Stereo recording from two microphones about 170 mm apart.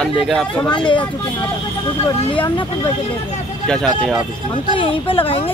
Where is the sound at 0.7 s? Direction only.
30° left (ahead or behind).